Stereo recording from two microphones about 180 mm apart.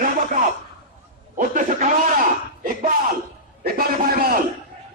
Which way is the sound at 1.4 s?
50° right (ahead or behind).